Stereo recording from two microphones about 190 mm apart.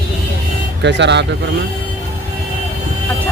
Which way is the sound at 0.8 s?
65° right (ahead or behind).